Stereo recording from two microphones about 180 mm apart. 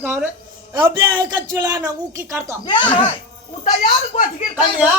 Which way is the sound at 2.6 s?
30° left (ahead or behind).